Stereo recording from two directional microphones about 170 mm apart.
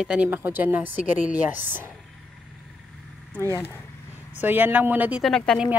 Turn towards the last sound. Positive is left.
turn(degrees=5)  # may be behind; listen again after turning